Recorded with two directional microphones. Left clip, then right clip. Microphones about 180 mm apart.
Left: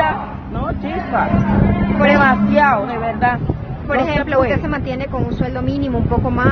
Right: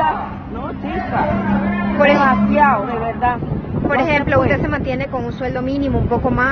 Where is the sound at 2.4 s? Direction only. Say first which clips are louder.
Even; centre (ahead or behind).